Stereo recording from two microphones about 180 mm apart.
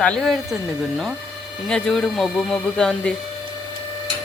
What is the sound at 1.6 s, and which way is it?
Speech, 5° left (ahead or behind).